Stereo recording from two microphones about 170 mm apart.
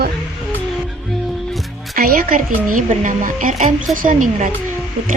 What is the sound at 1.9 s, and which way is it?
Speech, 60° right (ahead or behind).